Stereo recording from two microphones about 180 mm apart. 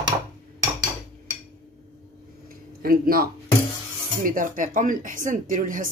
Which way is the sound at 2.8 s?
55° right (ahead or behind).